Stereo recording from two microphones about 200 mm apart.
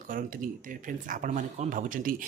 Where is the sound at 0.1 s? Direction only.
45° right (ahead or behind).